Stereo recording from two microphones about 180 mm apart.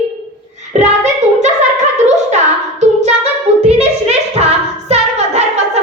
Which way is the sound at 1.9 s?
40° right (ahead or behind).